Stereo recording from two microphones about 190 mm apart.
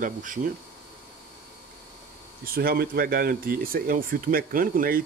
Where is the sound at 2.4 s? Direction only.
50° right (ahead or behind).